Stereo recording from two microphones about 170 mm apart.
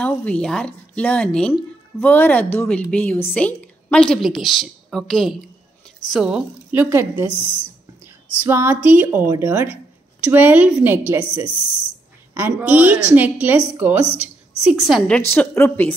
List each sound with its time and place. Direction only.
0.0 s a woman's voice: 5° left (ahead or behind); by 7.2 s 15° right (ahead or behind)
7.2 s speech: 30° left (ahead or behind)
8.4 s a woman's voice: 15° right (ahead or behind); by 15.9 s 15° left (ahead or behind)